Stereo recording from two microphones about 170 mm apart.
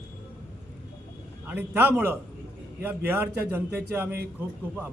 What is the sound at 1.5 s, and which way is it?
A man's voice, 10° right (ahead or behind).